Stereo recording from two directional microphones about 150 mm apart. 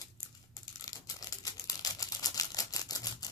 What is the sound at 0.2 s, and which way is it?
Crumpling, 20° left (ahead or behind).